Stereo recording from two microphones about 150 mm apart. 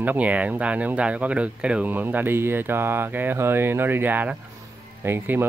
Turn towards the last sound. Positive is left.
turn(degrees=-15)  # may be behind; listen again after turning